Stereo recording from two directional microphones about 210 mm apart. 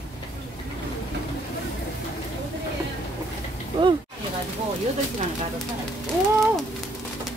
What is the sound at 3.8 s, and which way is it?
Speech, 25° right (ahead or behind).